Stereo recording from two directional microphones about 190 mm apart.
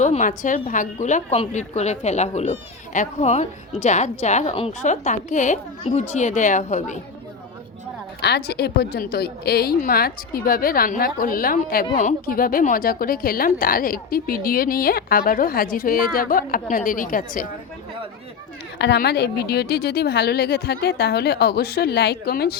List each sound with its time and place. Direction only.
0.0 s a woman's voice: 40° left (ahead or behind)
8.2 s a woman's voice: 60° left (ahead or behind)
18.8 s a woman's voice: 60° left (ahead or behind)